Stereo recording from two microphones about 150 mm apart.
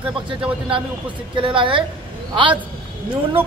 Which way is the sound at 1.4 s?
35° right (ahead or behind).